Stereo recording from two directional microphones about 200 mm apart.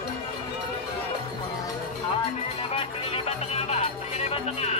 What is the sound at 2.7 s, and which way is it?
Music, 30° left (ahead or behind).